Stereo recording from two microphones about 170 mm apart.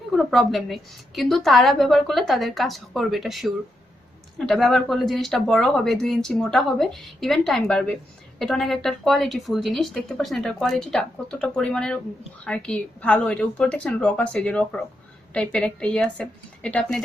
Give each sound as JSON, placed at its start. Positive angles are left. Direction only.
{"t": 0.1, "sound": "a woman's voice", "side_deg": 0}